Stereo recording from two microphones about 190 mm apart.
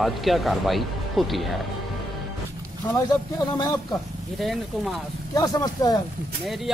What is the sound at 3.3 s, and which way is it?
Speech, 20° left (ahead or behind).